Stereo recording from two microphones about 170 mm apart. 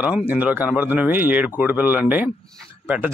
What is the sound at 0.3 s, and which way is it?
A man's voice, 10° right (ahead or behind).